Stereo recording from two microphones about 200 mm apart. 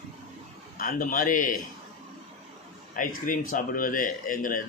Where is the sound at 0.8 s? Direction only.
45° left (ahead or behind).